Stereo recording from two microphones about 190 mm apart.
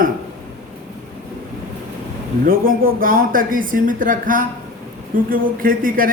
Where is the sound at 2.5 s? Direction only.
50° right (ahead or behind).